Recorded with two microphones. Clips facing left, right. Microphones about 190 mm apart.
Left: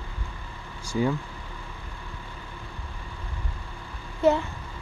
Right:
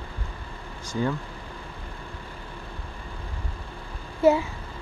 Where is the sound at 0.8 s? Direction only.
10° left (ahead or behind).